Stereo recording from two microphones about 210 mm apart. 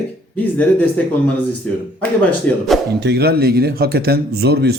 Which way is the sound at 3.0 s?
50° right (ahead or behind).